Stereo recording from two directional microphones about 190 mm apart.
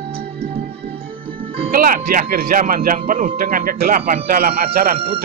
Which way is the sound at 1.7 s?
50° right (ahead or behind).